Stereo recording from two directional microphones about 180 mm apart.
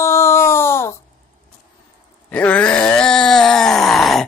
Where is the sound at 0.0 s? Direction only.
15° left (ahead or behind).